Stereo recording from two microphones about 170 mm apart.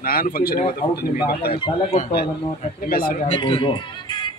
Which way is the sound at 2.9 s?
60° left (ahead or behind).